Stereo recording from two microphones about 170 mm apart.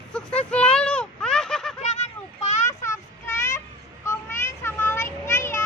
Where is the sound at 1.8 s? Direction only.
40° left (ahead or behind).